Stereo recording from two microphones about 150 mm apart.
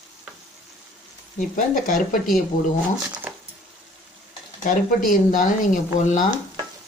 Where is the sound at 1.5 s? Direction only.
65° left (ahead or behind).